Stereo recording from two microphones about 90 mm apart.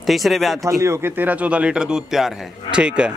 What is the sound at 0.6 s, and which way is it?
Speech, 35° right (ahead or behind).